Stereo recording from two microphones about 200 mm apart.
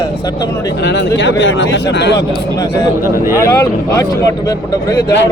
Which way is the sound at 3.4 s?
15° left (ahead or behind).